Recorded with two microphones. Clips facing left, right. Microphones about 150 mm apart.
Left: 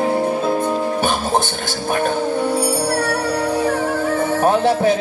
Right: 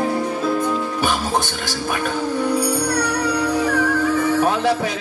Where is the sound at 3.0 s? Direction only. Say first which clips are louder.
Left 1 dB; 50° left (ahead or behind).